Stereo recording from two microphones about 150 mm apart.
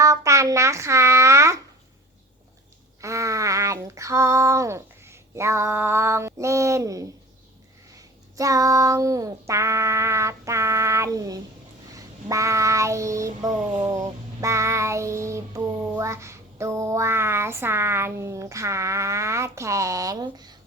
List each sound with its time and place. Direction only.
0.0 s speech: 20° right (ahead or behind)
3.0 s a sound: 20° right (ahead or behind)
7.9 s child singing: 20° right (ahead or behind)